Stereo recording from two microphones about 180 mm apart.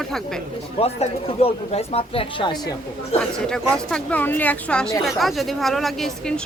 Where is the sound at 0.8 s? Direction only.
35° left (ahead or behind).